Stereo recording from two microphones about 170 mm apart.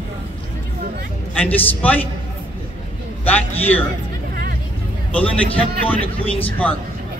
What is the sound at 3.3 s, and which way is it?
Speech, 10° left (ahead or behind).